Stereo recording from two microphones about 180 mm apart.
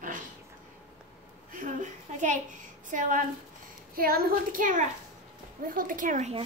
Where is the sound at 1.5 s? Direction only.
45° right (ahead or behind).